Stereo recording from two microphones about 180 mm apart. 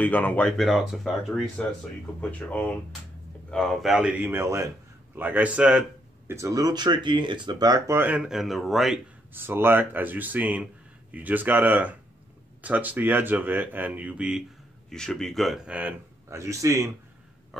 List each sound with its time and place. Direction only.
0.0 s a man's voice: 10° left (ahead or behind)
6.3 s speech: 20° right (ahead or behind); by 9.0 s centre (ahead or behind)
9.3 s speech: 10° right (ahead or behind)